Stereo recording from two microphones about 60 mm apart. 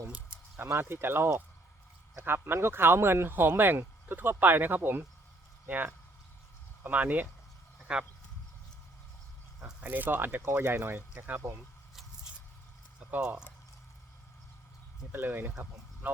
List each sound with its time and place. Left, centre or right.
0.6 s speech: right
7.9 s speech: centre
9.8 s speech: right
11.1 s speech: right
15.1 s speech: right